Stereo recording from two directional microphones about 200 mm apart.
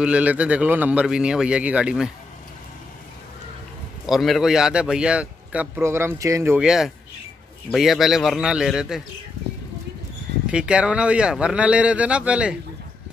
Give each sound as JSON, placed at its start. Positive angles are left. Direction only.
{"t": 0.0, "sound": "a man's voice", "side_deg": -5}
{"t": 4.0, "sound": "a man's voice", "side_deg": 0}
{"t": 10.4, "sound": "a man's voice", "side_deg": -5}